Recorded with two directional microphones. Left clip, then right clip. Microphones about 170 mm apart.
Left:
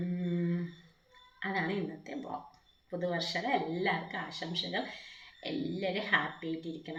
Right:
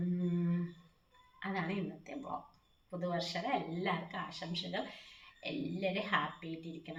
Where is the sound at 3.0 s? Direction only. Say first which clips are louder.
Left 4 dB; 5° right (ahead or behind).